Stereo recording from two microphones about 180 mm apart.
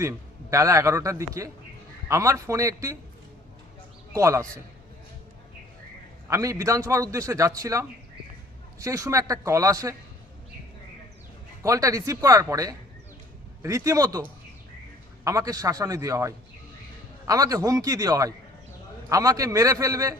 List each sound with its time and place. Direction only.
0.0 s a man's voice: 15° right (ahead or behind)
4.1 s a man's voice: 15° right (ahead or behind)
6.2 s a man's voice: 15° right (ahead or behind)
11.6 s a man's voice: 20° right (ahead or behind)
15.2 s a man's voice: 20° right (ahead or behind)